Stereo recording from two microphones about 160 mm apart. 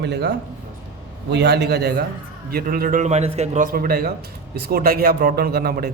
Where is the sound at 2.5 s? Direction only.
70° right (ahead or behind).